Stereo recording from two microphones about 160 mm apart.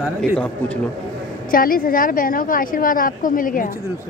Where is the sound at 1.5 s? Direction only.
60° left (ahead or behind).